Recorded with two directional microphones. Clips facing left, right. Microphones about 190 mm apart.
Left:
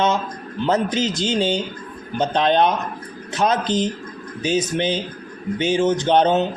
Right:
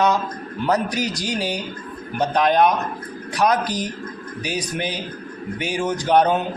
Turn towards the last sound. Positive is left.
turn(degrees=25)  # may be behind; listen again after turning